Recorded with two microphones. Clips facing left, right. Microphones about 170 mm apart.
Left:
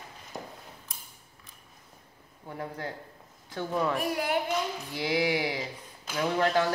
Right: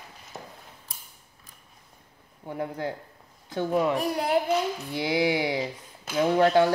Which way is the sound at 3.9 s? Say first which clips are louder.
Right 4 dB; 30° right (ahead or behind).